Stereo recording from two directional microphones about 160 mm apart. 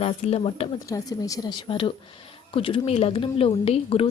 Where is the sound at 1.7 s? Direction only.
35° left (ahead or behind).